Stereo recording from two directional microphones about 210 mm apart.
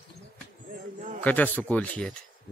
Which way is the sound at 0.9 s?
35° right (ahead or behind).